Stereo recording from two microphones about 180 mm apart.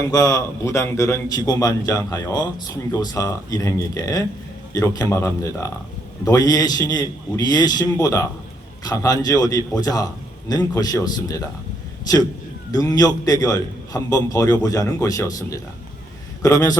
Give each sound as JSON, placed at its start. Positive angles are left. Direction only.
{"t": 0.1, "sound": "a man's voice", "side_deg": 20}
{"t": 12.7, "sound": "a man's voice", "side_deg": 20}